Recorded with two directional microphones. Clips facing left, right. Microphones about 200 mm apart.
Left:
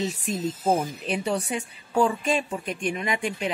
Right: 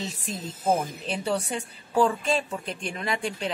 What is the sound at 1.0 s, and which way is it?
Speech, 30° right (ahead or behind).